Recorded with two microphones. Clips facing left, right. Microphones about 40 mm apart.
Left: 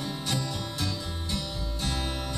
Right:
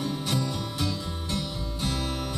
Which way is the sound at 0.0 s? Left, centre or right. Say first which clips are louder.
Right 3 dB; centre.